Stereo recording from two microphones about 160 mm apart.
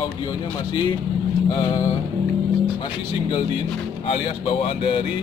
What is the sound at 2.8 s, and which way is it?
Speech, 35° left (ahead or behind).